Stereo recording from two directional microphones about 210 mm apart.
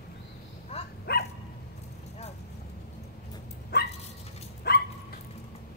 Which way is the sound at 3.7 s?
50° left (ahead or behind).